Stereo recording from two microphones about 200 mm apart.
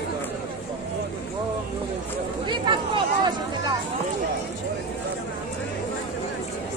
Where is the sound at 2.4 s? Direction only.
25° right (ahead or behind).